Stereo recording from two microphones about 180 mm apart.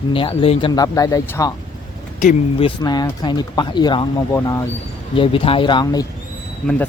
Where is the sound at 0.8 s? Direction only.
20° left (ahead or behind).